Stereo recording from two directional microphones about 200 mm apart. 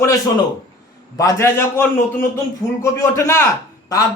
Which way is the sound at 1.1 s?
15° left (ahead or behind).